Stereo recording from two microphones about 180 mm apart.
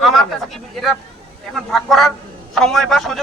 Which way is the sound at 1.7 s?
Centre (ahead or behind).